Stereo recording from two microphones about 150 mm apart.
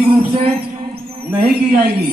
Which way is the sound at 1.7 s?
90° right.